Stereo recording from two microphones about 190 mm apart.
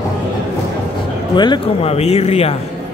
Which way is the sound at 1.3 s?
25° left (ahead or behind).